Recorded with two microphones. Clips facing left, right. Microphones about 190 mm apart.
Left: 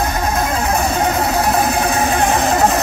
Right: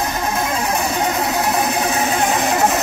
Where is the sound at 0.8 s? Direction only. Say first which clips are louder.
Left 3 dB; 35° left (ahead or behind).